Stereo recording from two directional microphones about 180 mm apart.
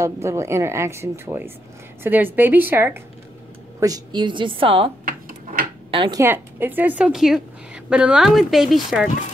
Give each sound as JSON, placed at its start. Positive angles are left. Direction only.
{"t": 0.0, "sound": "a woman's voice", "side_deg": -15}
{"t": 5.0, "sound": "drawer open or close", "side_deg": -50}
{"t": 5.9, "sound": "speech", "side_deg": -25}
{"t": 6.2, "sound": "a woman's voice", "side_deg": -10}